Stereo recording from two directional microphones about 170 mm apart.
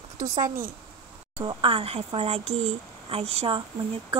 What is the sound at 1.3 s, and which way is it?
Speech, 35° right (ahead or behind).